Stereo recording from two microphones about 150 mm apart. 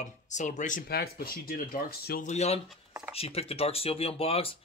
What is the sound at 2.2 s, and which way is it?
Speech, 45° left (ahead or behind).